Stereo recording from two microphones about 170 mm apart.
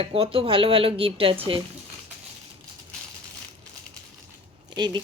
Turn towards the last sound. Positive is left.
turn(degrees=-25)  # may be behind; listen again after turning